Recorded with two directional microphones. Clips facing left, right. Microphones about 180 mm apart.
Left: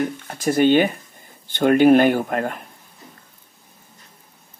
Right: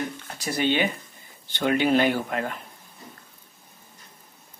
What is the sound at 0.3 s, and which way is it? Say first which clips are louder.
Speech: left 9 dB; 50° left (ahead or behind).